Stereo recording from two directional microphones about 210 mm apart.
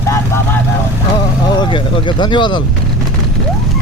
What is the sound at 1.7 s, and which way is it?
Speech, 20° left (ahead or behind).